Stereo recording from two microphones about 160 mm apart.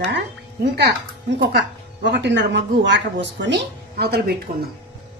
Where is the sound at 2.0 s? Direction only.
90° right.